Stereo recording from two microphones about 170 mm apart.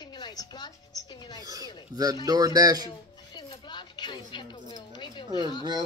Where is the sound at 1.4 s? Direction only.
20° right (ahead or behind).